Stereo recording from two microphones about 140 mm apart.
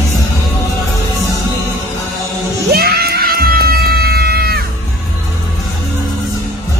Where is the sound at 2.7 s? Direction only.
90° right.